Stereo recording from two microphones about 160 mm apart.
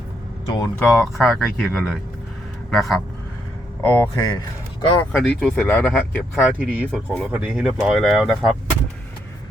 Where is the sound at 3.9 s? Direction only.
25° left (ahead or behind).